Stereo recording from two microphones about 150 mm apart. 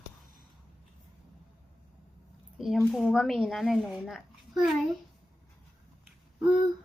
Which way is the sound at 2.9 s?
Centre (ahead or behind).